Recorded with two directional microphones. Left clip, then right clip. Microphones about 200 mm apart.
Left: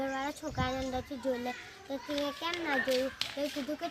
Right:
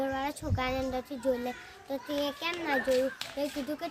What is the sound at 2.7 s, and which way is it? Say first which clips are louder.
Speech: right 4 dB; 50° right (ahead or behind).